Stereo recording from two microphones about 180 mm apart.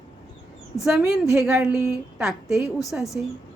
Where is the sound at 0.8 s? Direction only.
Centre (ahead or behind).